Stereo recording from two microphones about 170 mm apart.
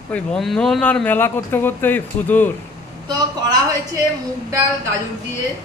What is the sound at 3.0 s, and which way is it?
Speech, 25° right (ahead or behind).